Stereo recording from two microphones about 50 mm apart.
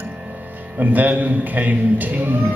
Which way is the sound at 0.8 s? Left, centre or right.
Right.